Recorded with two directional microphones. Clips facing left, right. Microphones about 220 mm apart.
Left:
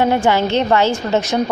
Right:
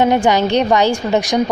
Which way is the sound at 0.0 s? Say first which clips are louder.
Right 2 dB; 20° right (ahead or behind).